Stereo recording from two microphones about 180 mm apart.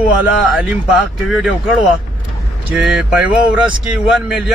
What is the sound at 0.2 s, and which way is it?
A man's voice, 5° right (ahead or behind).